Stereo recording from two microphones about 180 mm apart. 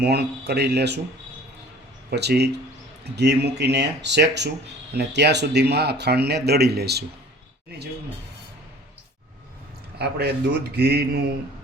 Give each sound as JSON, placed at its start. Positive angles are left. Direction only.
{"t": 0.0, "sound": "speech", "side_deg": -65}
{"t": 2.0, "sound": "speech", "side_deg": -65}
{"t": 10.0, "sound": "speech", "side_deg": -65}